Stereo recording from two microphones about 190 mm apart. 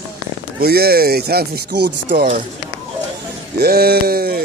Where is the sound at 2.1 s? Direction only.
45° right (ahead or behind).